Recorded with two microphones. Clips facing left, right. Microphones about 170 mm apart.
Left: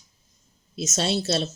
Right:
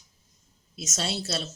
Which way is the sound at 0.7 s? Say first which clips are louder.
Left 7 dB; 25° left (ahead or behind).